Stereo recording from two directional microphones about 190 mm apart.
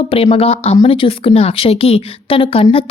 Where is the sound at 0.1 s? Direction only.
30° left (ahead or behind).